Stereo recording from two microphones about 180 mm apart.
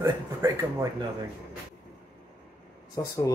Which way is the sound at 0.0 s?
15° right (ahead or behind).